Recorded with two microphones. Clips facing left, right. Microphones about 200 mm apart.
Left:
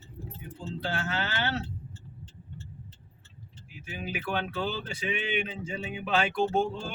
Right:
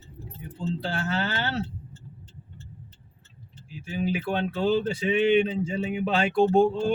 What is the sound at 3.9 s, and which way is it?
Speech, 30° right (ahead or behind).